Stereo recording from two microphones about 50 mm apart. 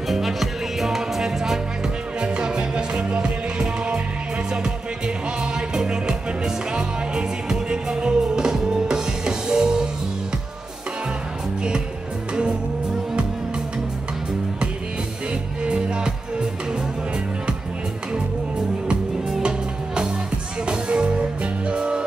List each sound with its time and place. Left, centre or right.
0.1 s music: centre
5.0 s music: centre
15.6 s music: centre
19.3 s music: centre